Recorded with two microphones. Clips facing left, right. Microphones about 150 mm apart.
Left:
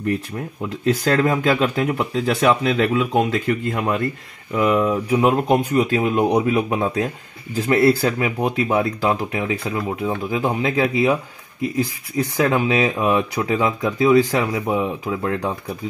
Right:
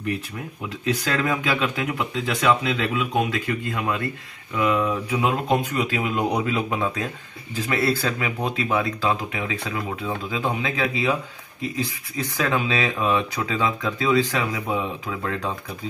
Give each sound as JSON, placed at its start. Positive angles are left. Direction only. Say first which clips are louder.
{"t": 0.8, "sound": "speech", "louder": "left 6 dB", "side_deg": 40}
{"t": 12.4, "sound": "speech", "louder": "left 5 dB", "side_deg": 20}